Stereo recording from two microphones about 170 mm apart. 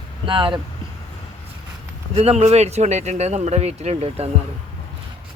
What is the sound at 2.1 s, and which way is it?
Speech, 35° right (ahead or behind).